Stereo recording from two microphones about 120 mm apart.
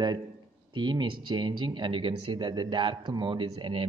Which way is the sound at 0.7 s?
40° right (ahead or behind).